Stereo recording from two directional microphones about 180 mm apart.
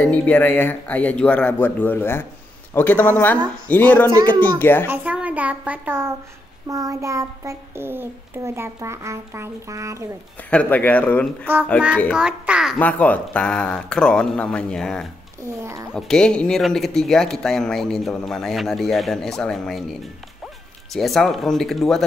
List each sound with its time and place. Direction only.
0.0 s speech: 10° left (ahead or behind)
4.8 s a child's voice: 10° right (ahead or behind)
10.5 s speech: 10° left (ahead or behind)
12.1 s speech: 5° right (ahead or behind)
12.7 s speech: 10° left (ahead or behind)
15.4 s a child's voice: 15° right (ahead or behind)
15.9 s speech: 5° left (ahead or behind)